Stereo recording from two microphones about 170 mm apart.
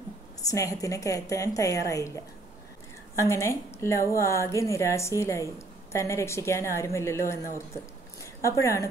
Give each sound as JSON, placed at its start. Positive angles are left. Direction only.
{"t": 0.5, "sound": "a woman's voice", "side_deg": 20}